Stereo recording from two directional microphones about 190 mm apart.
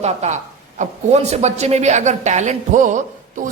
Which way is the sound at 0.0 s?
35° right (ahead or behind).